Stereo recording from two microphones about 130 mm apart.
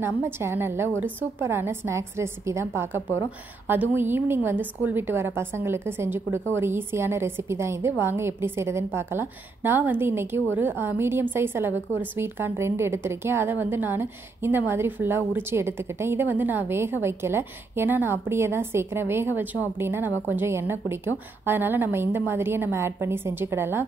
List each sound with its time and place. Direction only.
0.0 s a woman's voice: 20° right (ahead or behind)